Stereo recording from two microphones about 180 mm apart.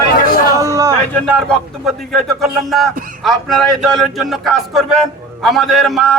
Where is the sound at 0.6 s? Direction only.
15° right (ahead or behind).